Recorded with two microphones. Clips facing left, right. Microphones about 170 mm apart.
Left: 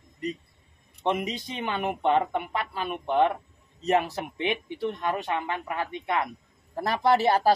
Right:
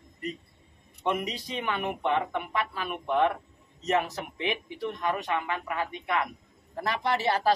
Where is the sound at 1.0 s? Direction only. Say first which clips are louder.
Left 2 dB; 25° left (ahead or behind).